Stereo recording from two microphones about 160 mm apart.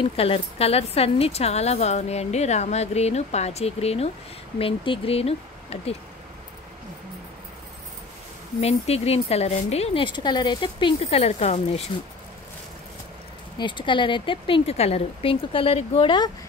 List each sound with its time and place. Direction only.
0.0 s a woman's voice: 35° left (ahead or behind)
8.5 s a woman's voice: 40° left (ahead or behind)
13.6 s a woman's voice: 30° left (ahead or behind)